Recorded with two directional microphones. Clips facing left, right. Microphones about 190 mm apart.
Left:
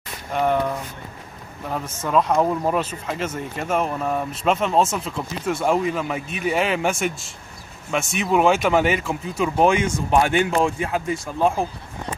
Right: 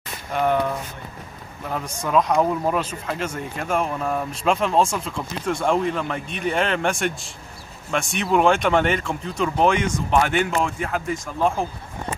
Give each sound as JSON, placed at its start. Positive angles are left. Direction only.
{"t": 0.3, "sound": "speech", "side_deg": 0}
{"t": 2.0, "sound": "speech", "side_deg": 0}
{"t": 10.5, "sound": "speech", "side_deg": 25}